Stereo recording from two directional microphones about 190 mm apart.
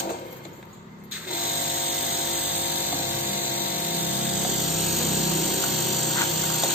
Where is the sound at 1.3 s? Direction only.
50° left (ahead or behind).